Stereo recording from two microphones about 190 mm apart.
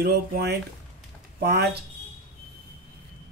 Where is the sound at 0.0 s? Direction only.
55° right (ahead or behind).